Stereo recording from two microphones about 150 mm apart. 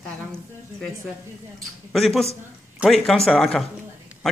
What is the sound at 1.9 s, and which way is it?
Speech, centre (ahead or behind).